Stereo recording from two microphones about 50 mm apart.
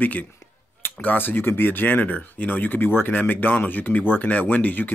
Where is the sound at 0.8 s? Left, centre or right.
Left.